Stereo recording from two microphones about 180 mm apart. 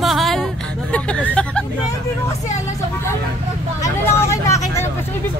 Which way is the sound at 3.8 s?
15° left (ahead or behind).